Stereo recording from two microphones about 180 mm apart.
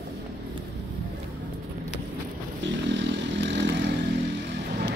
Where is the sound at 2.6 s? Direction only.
80° right.